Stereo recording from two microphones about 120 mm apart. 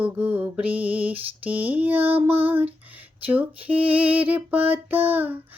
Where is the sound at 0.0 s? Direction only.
15° right (ahead or behind).